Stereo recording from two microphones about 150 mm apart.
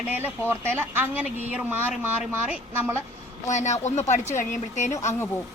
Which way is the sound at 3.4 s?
50° left (ahead or behind).